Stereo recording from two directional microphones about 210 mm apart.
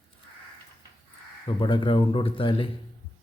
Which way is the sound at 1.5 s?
25° left (ahead or behind).